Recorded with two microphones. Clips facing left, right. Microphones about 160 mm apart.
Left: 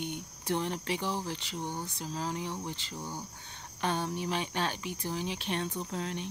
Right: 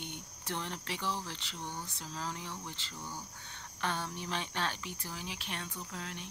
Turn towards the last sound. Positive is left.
turn(degrees=25)  # may be behind; listen again after turning